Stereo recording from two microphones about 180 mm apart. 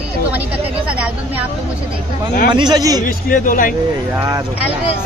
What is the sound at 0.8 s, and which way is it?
Speech, 5° right (ahead or behind).